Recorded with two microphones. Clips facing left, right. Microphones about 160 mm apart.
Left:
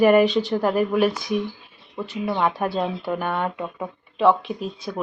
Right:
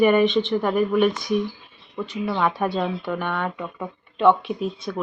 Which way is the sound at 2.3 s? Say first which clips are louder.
Left 1 dB; 25° left (ahead or behind).